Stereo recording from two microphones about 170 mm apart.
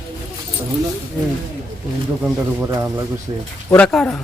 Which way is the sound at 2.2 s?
15° right (ahead or behind).